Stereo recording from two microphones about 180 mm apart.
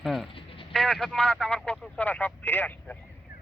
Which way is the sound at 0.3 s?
30° left (ahead or behind).